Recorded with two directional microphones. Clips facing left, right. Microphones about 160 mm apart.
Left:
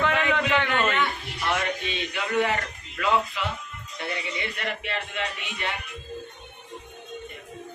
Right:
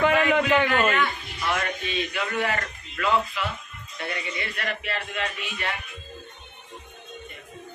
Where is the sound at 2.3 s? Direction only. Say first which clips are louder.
Left 4 dB; 15° left (ahead or behind).